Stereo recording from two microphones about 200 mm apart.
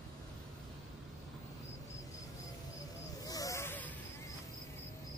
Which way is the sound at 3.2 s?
15° left (ahead or behind).